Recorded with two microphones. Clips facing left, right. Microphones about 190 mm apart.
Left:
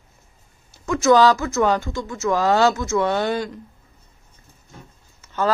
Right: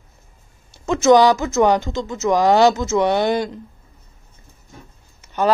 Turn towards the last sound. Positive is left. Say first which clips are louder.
# right 3 dB
turn(degrees=-15)  # may be behind; listen again after turning